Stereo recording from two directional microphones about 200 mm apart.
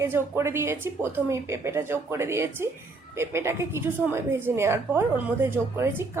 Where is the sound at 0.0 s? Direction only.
10° right (ahead or behind).